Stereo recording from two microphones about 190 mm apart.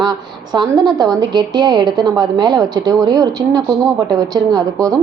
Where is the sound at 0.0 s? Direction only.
20° right (ahead or behind).